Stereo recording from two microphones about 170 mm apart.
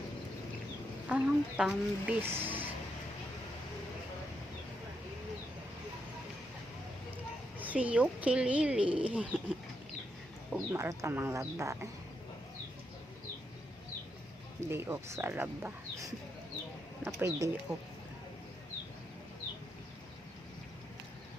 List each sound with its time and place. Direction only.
1.0 s speech: 5° right (ahead or behind)
7.6 s speech: 10° right (ahead or behind)
10.5 s speech: 15° right (ahead or behind)
14.6 s speech: 15° right (ahead or behind)